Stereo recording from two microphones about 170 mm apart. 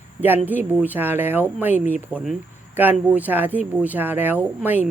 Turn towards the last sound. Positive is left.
turn(degrees=-5)  # may be behind; listen again after turning